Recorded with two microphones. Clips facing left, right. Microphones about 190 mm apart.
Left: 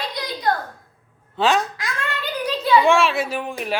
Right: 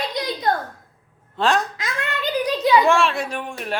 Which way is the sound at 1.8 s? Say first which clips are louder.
Right 1 dB; 15° right (ahead or behind).